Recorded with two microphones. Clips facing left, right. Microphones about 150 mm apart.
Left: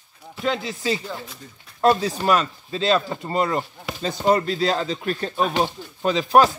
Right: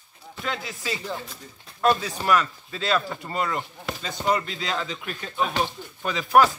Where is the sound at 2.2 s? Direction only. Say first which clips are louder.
Left 1 dB; 25° left (ahead or behind).